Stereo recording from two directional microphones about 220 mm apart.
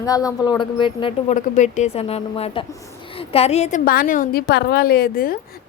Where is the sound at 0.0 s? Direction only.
15° left (ahead or behind).